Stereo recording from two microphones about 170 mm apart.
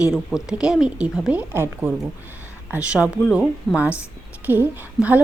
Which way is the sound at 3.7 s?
5° left (ahead or behind).